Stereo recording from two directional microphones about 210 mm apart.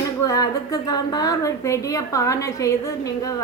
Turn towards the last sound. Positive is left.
turn(degrees=15)  # may be behind; listen again after turning